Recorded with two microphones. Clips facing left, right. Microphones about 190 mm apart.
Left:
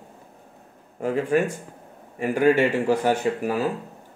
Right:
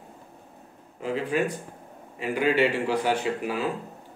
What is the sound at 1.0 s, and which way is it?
Speech, 50° left (ahead or behind).